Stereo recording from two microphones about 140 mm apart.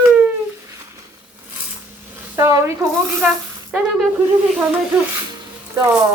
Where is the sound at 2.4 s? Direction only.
20° right (ahead or behind).